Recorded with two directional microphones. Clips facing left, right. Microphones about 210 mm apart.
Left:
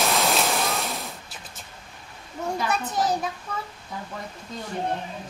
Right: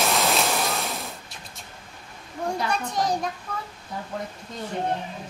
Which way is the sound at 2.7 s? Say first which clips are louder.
Left 1 dB; 5° left (ahead or behind).